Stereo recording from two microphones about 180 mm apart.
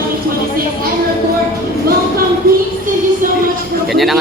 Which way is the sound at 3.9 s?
Centre (ahead or behind).